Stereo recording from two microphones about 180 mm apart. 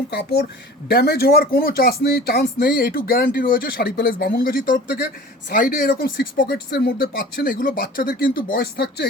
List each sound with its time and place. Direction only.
0.1 s speech: 60° left (ahead or behind)